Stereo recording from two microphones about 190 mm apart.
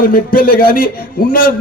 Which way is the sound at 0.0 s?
50° left (ahead or behind).